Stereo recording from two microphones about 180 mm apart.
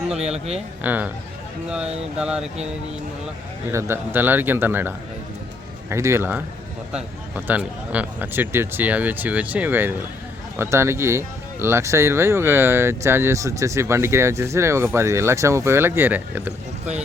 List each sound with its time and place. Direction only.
0.2 s speech: 35° right (ahead or behind)
0.8 s speech: 10° right (ahead or behind)
2.1 s speech: 5° right (ahead or behind)
3.7 s speech: 15° right (ahead or behind)